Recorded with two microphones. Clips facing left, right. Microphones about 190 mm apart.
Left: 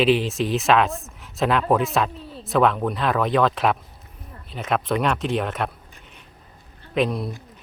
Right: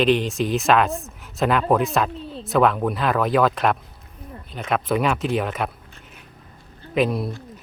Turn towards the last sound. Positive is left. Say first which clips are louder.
# right 1 dB
turn(degrees=0)  # may be behind; listen again after turning